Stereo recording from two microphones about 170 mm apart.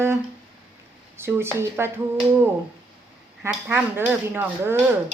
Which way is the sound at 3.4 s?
15° right (ahead or behind).